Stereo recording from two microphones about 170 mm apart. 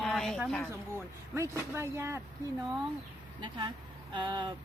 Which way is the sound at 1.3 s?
15° right (ahead or behind).